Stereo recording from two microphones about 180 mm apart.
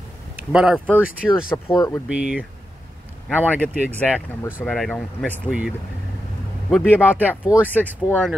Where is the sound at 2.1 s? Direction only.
5° right (ahead or behind).